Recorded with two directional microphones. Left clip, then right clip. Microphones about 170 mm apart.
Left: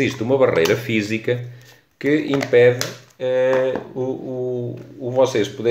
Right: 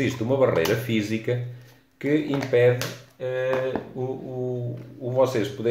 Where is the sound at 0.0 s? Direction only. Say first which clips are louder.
Left 5 dB; 30° left (ahead or behind).